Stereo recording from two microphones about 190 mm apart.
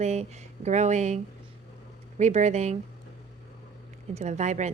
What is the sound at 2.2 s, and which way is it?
Speech, 35° right (ahead or behind).